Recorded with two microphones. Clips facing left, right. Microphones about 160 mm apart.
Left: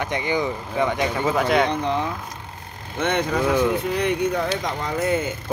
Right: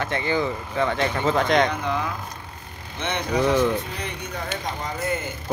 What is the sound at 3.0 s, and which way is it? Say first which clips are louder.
Speech: left 3 dB; 50° left (ahead or behind).